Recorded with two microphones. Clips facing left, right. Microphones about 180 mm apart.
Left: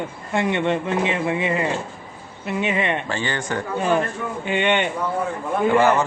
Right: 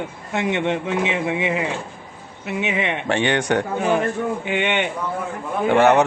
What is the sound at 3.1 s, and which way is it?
Speech, 70° right (ahead or behind).